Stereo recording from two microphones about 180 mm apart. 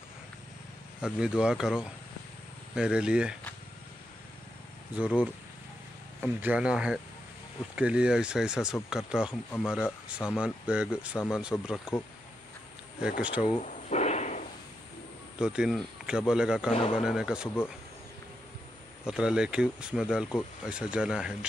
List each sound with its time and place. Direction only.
1.0 s speech: 5° right (ahead or behind)
4.9 s speech: 5° right (ahead or behind)
9.3 s speech: 10° left (ahead or behind)
10.0 s speech: 5° right (ahead or behind)
13.2 s speech: 5° right (ahead or behind)
13.6 s a sound: 40° left (ahead or behind)
15.3 s speech: 5° right (ahead or behind)
16.7 s speech: 30° left (ahead or behind)
17.0 s speech: centre (ahead or behind)
19.0 s speech: 5° right (ahead or behind)